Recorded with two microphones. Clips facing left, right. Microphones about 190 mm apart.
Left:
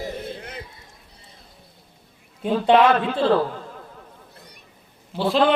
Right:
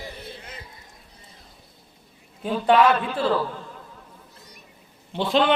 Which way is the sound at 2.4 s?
25° left (ahead or behind).